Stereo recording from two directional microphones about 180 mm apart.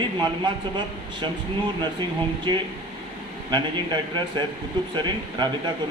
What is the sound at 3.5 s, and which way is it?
Speech, 25° right (ahead or behind).